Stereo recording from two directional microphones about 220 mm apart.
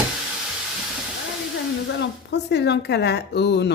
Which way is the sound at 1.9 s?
50° left (ahead or behind).